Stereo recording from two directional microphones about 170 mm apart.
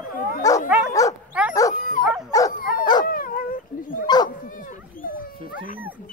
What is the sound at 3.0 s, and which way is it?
Dog, 55° left (ahead or behind).